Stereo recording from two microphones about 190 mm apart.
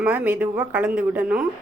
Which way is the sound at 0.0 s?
10° right (ahead or behind).